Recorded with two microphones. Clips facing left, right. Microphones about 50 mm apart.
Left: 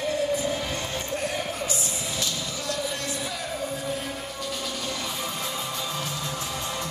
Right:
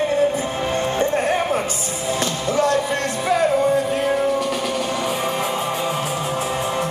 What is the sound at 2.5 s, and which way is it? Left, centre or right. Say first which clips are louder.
Music: right 14 dB; right.